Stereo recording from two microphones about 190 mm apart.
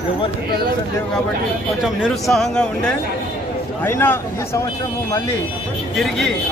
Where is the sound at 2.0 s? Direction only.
Centre (ahead or behind).